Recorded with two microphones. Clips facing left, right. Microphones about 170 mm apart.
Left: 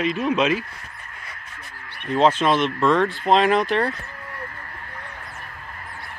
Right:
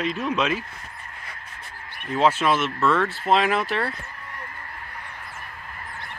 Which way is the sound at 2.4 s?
35° left (ahead or behind).